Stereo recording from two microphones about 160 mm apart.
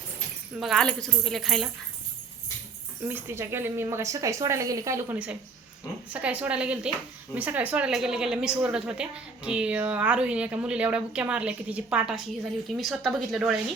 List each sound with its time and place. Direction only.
0.6 s speech: centre (ahead or behind)
3.0 s a woman's voice: 15° right (ahead or behind)
5.1 s a woman's voice: 10° right (ahead or behind)